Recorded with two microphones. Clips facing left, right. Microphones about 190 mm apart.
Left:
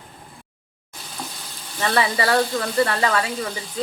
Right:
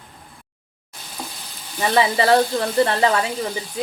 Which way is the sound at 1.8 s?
20° right (ahead or behind).